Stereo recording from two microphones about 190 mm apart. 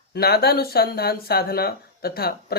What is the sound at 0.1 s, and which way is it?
Speech, 55° left (ahead or behind).